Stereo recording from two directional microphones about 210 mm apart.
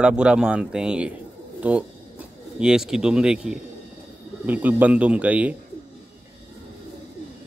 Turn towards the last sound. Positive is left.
turn(degrees=-5)  # may be behind; listen again after turning